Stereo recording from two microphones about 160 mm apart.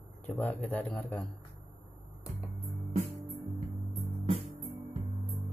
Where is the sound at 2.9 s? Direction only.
45° right (ahead or behind).